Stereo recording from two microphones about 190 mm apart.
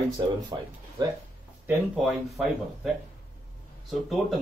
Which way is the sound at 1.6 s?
5° right (ahead or behind).